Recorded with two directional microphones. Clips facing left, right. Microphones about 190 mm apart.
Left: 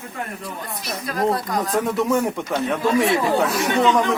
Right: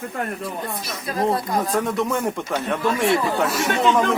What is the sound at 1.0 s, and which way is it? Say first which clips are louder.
Speech: even; 25° right (ahead or behind).